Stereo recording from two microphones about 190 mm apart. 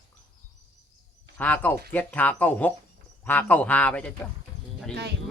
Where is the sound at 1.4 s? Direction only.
10° left (ahead or behind).